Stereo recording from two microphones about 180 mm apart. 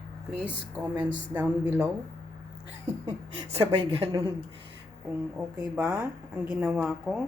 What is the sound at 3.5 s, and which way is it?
Speech, 35° right (ahead or behind).